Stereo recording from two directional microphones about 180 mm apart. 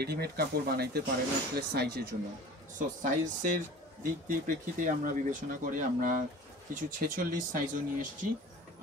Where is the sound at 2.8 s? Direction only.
45° right (ahead or behind).